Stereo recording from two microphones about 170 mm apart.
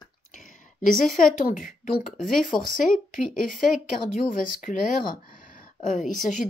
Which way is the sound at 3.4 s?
Centre (ahead or behind).